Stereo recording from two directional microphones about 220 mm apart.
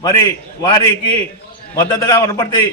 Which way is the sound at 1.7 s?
15° left (ahead or behind).